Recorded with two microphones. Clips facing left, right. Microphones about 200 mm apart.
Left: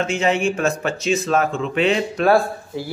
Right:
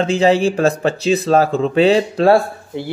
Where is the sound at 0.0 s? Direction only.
35° right (ahead or behind).